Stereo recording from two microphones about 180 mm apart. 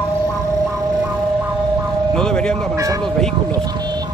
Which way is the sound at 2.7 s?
15° right (ahead or behind).